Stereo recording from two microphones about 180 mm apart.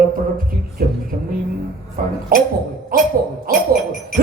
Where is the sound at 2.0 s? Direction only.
50° right (ahead or behind).